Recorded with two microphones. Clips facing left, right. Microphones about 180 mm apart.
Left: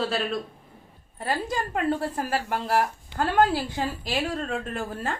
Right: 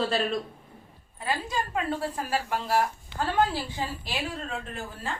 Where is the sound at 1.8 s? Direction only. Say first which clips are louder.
Left 6 dB; 45° left (ahead or behind).